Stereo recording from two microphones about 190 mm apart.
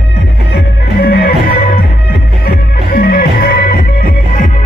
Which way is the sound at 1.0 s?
55° left (ahead or behind).